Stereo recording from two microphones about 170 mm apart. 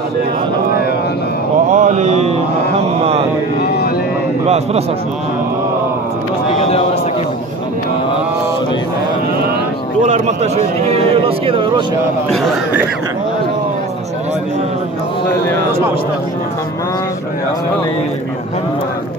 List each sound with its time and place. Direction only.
1.7 s mantra: 45° right (ahead or behind)
3.6 s a sound: 70° left (ahead or behind)
10.0 s speech: 40° right (ahead or behind)